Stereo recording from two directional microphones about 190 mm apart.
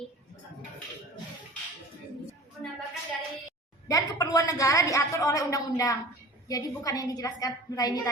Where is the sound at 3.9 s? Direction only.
20° left (ahead or behind).